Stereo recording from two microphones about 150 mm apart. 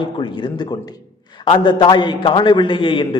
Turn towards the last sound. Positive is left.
turn(degrees=35)  # may be behind; listen again after turning